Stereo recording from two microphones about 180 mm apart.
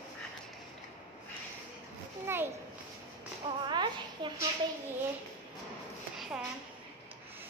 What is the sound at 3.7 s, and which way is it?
Speech, 25° right (ahead or behind).